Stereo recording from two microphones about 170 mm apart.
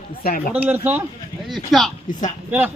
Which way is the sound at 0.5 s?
10° right (ahead or behind).